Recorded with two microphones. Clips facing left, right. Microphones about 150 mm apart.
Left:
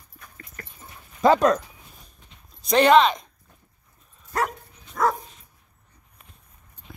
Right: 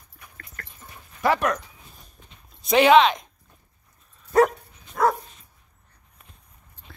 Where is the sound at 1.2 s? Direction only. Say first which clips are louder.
Left 5 dB; 25° left (ahead or behind).